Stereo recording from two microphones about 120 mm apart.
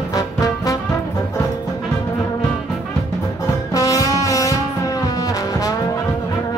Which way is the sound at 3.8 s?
30° left (ahead or behind).